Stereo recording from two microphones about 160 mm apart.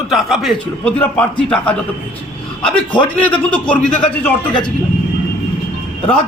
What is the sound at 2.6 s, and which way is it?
Speech, 5° left (ahead or behind).